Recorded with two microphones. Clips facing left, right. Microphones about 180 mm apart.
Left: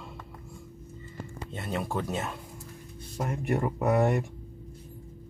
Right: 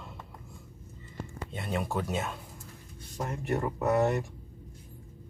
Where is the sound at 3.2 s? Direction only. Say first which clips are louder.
Left 2 dB; 15° left (ahead or behind).